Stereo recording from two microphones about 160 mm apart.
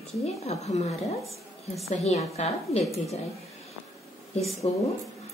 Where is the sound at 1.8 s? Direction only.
40° left (ahead or behind).